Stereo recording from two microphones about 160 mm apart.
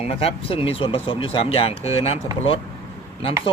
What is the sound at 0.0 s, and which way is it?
Speech, 40° left (ahead or behind).